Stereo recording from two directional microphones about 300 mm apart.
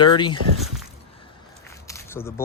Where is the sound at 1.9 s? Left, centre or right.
Centre.